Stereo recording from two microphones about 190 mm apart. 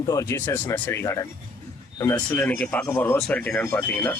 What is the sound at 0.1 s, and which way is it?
Speech, 15° left (ahead or behind).